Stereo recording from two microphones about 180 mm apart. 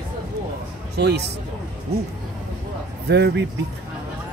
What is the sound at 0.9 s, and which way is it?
Speech, 65° right (ahead or behind).